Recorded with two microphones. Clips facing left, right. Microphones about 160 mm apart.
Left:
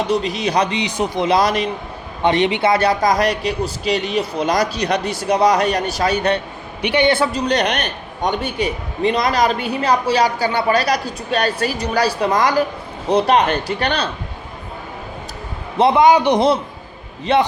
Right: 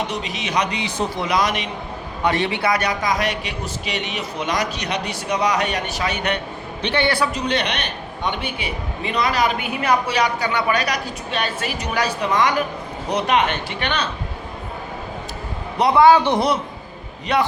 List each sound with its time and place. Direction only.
0.1 s a man's voice: 35° left (ahead or behind)
0.8 s speech: 15° left (ahead or behind)
1.3 s a man's voice: 35° left (ahead or behind)
2.2 s a man's voice: 20° left (ahead or behind)
6.8 s a man's voice: 15° left (ahead or behind)
7.4 s a man's voice: 45° left (ahead or behind)
15.8 s a man's voice: 15° left (ahead or behind)